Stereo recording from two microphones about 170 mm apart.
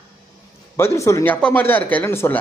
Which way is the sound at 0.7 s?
15° left (ahead or behind).